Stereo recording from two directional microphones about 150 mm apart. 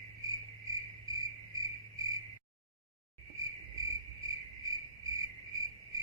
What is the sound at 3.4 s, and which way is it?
Cricket, 20° right (ahead or behind).